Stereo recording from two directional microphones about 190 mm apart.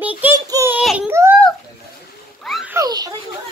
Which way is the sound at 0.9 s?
10° right (ahead or behind).